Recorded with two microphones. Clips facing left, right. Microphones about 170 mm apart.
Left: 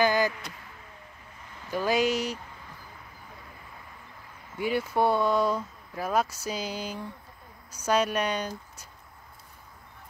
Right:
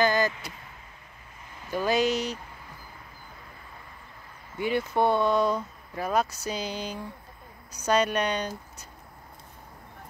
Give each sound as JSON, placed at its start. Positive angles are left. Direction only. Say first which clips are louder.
{"t": 0.0, "sound": "vehicle", "louder": "even", "side_deg": 10}
{"t": 1.7, "sound": "speech", "louder": "right 1 dB", "side_deg": 10}
{"t": 4.6, "sound": "a woman's voice", "louder": "right 1 dB", "side_deg": 5}